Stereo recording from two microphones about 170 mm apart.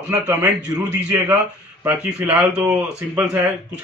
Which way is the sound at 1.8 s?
10° right (ahead or behind).